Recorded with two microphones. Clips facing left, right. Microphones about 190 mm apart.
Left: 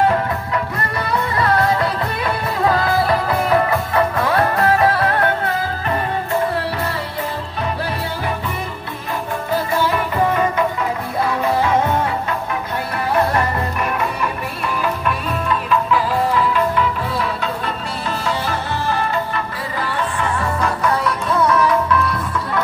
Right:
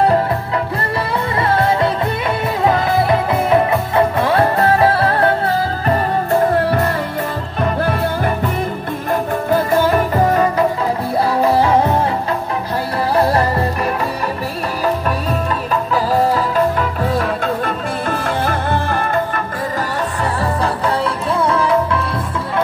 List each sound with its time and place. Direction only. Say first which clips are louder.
1.4 s music: right 2 dB; 25° right (ahead or behind)
7.8 s music: right 6 dB; 50° right (ahead or behind)
9.5 s music: right 5 dB; 50° right (ahead or behind); by 12.1 s 35° right (ahead or behind)
13.1 s music: right 3 dB; 35° right (ahead or behind); by 19.4 s 50° right (ahead or behind)
20.2 s music: right 3 dB; 35° right (ahead or behind)